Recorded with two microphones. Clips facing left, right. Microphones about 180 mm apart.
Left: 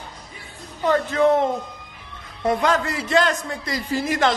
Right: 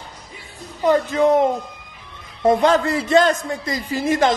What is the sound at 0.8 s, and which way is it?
Speech, 15° right (ahead or behind).